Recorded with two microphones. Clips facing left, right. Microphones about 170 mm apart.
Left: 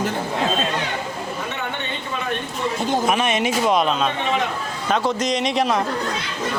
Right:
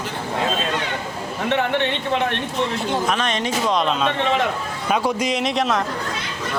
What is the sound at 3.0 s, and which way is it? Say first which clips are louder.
A man's voice: left 2 dB; 10° left (ahead or behind).